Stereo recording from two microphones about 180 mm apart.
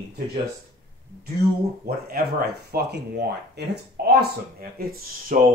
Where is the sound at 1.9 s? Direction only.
60° right (ahead or behind).